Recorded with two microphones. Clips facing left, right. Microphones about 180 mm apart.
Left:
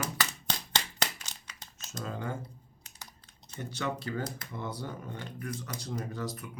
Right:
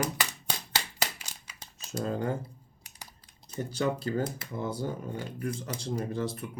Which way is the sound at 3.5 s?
30° right (ahead or behind).